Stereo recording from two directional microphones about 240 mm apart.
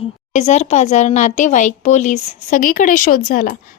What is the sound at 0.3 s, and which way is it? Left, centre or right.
A woman's voice, left.